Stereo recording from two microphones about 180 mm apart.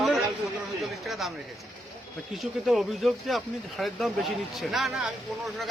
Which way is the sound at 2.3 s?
Centre (ahead or behind).